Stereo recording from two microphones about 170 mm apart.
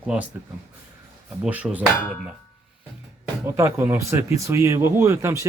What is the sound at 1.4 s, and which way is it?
Speech, 5° right (ahead or behind).